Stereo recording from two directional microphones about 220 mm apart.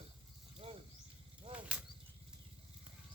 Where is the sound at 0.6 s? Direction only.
30° right (ahead or behind).